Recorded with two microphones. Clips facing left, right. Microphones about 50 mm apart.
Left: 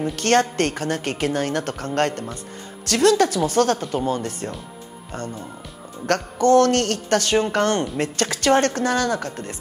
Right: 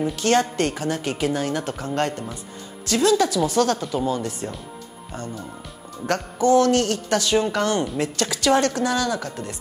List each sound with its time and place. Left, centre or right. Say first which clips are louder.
0.1 s a woman's voice: left 5 dB; left
6.0 s a woman's voice: left 2 dB; left